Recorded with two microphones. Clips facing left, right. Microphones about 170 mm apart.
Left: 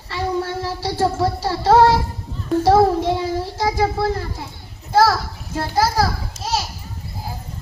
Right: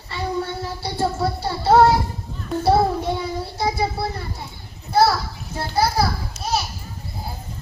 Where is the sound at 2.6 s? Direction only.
90° left.